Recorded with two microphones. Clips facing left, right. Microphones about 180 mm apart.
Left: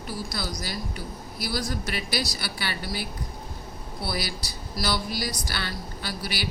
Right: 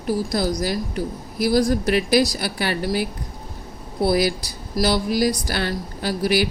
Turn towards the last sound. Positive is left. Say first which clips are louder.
# right 13 dB
turn(degrees=-45)  # may be behind; listen again after turning